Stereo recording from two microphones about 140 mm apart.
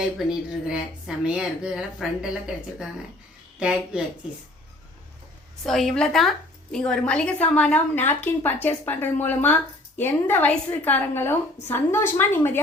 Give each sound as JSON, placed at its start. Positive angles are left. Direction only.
{"t": 0.0, "sound": "a woman's voice", "side_deg": -5}
{"t": 3.6, "sound": "speech", "side_deg": -5}
{"t": 5.6, "sound": "a woman's voice", "side_deg": 0}